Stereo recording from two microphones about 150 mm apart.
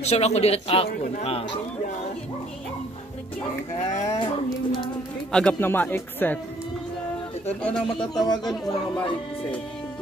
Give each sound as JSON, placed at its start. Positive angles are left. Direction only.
{"t": 0.0, "sound": "a man's voice", "side_deg": 45}
{"t": 3.8, "sound": "a man's voice", "side_deg": 45}
{"t": 5.3, "sound": "speech", "side_deg": 5}
{"t": 7.6, "sound": "speech", "side_deg": 5}
{"t": 8.2, "sound": "speech", "side_deg": 25}